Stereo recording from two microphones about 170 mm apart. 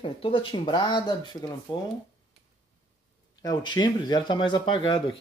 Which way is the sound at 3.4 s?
25° left (ahead or behind).